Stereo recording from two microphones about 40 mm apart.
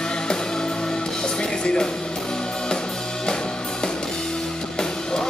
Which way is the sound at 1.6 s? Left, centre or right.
Centre.